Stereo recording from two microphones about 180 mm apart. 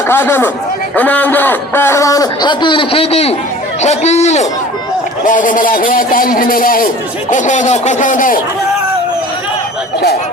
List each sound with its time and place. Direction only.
0.1 s a man's voice: 15° left (ahead or behind); by 8.4 s 45° left (ahead or behind)